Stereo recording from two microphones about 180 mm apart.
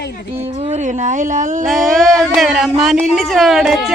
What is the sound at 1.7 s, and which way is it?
Speech, centre (ahead or behind).